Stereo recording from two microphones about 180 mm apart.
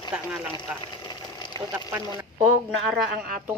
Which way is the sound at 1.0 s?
25° left (ahead or behind).